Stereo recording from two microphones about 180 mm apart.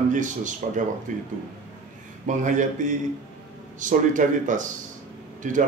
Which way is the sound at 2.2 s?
45° right (ahead or behind).